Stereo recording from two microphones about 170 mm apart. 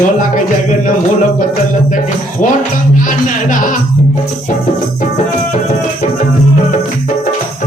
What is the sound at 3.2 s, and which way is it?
Music, 50° left (ahead or behind).